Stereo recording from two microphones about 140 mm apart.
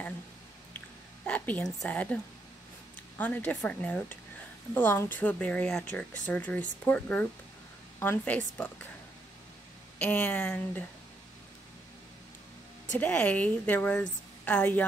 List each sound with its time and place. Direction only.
0.7 s a sound: 10° left (ahead or behind)
3.2 s a woman's voice: 10° left (ahead or behind)
9.9 s a woman's voice: 10° left (ahead or behind)
13.0 s a woman's voice: 10° left (ahead or behind)